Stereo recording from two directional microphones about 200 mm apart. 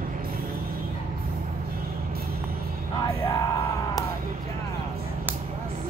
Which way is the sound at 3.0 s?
15° left (ahead or behind).